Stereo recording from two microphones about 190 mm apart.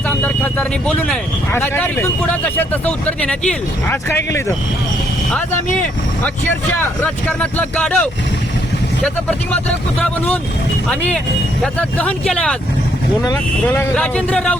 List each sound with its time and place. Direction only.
1.5 s speech: 10° left (ahead or behind)
7.0 s speech: 5° left (ahead or behind)
10.8 s speech: 5° left (ahead or behind)